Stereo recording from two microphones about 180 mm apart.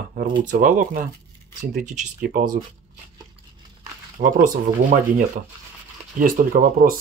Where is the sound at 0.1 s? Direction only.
50° right (ahead or behind).